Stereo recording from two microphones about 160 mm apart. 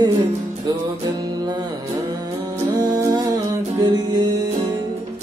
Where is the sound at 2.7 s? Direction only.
25° right (ahead or behind).